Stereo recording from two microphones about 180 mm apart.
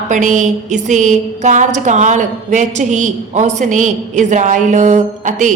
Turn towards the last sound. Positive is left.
turn(degrees=-45)  # may be behind; listen again after turning